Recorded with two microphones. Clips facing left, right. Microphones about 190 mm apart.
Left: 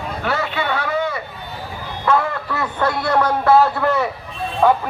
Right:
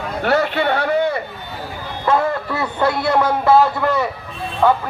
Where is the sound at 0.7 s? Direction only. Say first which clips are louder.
Right 4 dB; 35° right (ahead or behind).